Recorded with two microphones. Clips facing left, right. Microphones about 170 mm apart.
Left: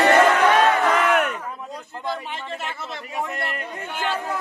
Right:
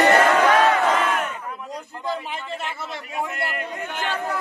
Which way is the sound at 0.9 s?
70° left (ahead or behind).